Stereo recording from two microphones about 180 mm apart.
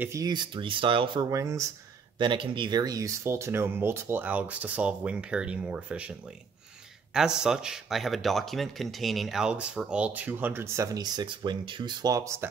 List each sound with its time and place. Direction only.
0.0 s speech: 15° right (ahead or behind)
7.2 s speech: 5° right (ahead or behind)